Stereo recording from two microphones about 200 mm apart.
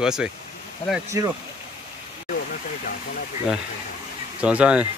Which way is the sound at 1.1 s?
15° right (ahead or behind).